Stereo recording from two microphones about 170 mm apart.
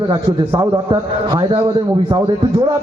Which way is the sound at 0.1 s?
25° right (ahead or behind).